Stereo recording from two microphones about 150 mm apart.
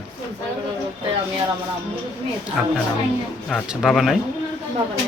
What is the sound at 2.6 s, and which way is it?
Speech, 5° right (ahead or behind).